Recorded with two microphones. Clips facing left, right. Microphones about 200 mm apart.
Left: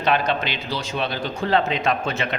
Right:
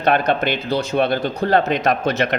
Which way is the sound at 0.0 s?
55° right (ahead or behind).